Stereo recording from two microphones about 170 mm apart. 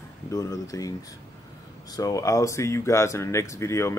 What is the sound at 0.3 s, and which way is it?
Speech, 20° left (ahead or behind).